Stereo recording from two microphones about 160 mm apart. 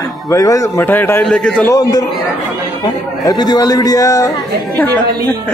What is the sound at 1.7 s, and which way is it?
Speech, 25° left (ahead or behind).